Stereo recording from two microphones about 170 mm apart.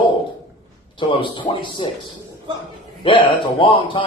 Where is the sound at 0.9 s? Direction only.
30° left (ahead or behind).